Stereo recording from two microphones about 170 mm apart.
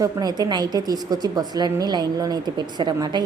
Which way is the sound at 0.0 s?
20° right (ahead or behind).